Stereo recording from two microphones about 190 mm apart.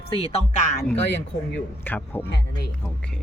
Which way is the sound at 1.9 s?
10° left (ahead or behind).